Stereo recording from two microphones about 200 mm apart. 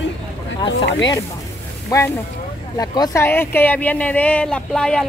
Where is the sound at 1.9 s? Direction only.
20° left (ahead or behind).